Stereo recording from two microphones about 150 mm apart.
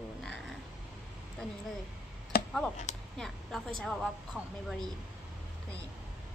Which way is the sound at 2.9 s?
50° left (ahead or behind).